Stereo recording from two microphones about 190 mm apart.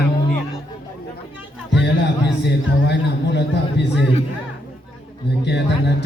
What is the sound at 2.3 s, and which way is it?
A man's voice, 65° left (ahead or behind).